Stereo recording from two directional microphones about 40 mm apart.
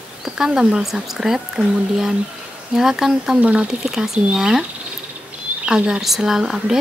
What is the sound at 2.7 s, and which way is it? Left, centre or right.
Speech, centre.